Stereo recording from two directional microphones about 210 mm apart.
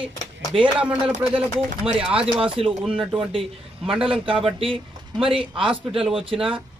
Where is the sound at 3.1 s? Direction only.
25° right (ahead or behind).